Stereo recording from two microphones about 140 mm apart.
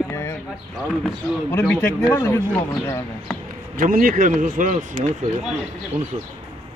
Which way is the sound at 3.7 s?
85° right.